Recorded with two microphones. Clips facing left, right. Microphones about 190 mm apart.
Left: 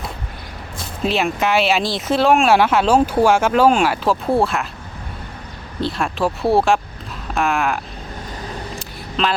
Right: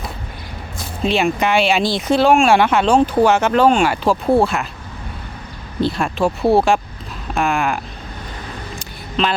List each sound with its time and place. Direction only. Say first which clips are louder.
1.0 s speech: right 2 dB; centre (ahead or behind)
5.8 s speech: right 3 dB; centre (ahead or behind)
9.2 s speech: right 1 dB; centre (ahead or behind)